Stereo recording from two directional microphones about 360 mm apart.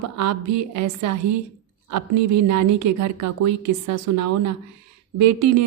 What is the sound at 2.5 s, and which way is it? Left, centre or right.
A woman's voice, right.